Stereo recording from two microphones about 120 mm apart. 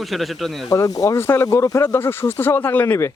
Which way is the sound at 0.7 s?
30° left (ahead or behind).